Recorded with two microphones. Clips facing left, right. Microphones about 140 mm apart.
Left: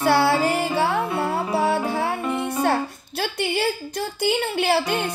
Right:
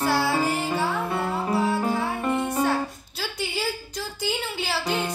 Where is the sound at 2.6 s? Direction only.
65° left (ahead or behind).